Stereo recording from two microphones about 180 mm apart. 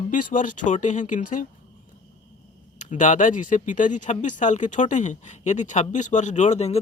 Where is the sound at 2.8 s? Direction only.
45° left (ahead or behind).